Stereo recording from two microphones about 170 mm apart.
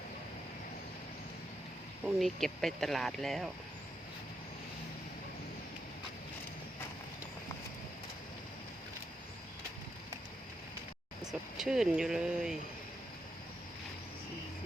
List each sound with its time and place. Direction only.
2.0 s speech: centre (ahead or behind)
11.2 s speech: centre (ahead or behind)